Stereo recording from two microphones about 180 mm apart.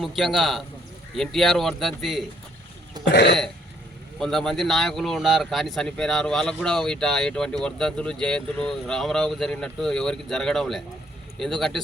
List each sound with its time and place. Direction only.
0.0 s speech: centre (ahead or behind)
3.1 s cough: 70° left (ahead or behind)
4.2 s speech: centre (ahead or behind)